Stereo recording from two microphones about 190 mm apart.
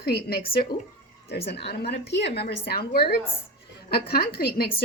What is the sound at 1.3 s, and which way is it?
A woman's voice, 60° left (ahead or behind).